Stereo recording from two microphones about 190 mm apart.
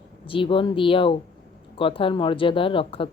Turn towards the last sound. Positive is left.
turn(degrees=30)  # may be behind; listen again after turning